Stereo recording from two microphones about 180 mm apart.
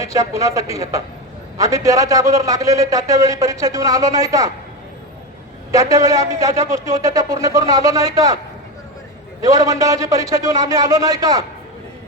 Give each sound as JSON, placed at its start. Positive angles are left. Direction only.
{"t": 0.0, "sound": "a man's voice", "side_deg": -20}
{"t": 5.7, "sound": "a man's voice", "side_deg": -20}
{"t": 9.4, "sound": "a man's voice", "side_deg": -20}